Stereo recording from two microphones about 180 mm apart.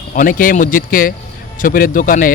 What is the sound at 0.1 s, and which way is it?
Speech, 50° left (ahead or behind).